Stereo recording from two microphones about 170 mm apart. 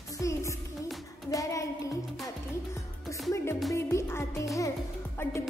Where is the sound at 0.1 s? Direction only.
20° left (ahead or behind).